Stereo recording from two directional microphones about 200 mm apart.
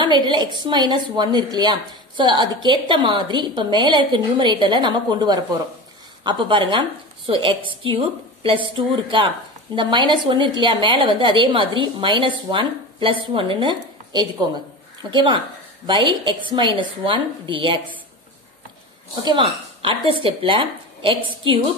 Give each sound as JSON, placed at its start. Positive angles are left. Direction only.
{"t": 0.0, "sound": "a woman's voice", "side_deg": -20}
{"t": 19.2, "sound": "a woman's voice", "side_deg": -25}